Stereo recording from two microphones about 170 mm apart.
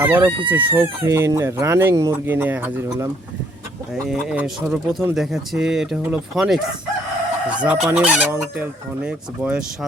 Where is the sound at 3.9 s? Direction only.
5° right (ahead or behind).